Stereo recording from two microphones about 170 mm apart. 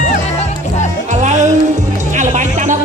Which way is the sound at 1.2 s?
45° right (ahead or behind).